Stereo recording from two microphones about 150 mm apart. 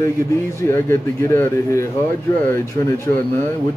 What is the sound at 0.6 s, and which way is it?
A man's voice, 20° left (ahead or behind).